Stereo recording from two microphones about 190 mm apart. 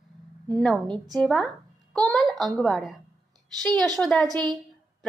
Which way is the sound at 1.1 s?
Centre (ahead or behind).